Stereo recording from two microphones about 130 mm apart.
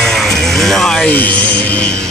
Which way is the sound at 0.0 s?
5° left (ahead or behind).